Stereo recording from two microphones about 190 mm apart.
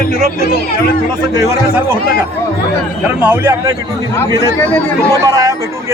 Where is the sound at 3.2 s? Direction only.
10° right (ahead or behind).